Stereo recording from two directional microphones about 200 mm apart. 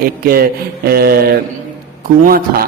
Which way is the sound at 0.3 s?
50° right (ahead or behind).